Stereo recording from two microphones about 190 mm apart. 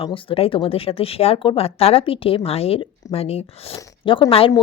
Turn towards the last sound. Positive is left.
turn(degrees=30)  # may be behind; listen again after turning